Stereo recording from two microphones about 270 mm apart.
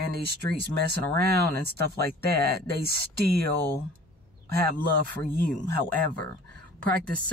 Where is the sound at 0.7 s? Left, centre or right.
Right.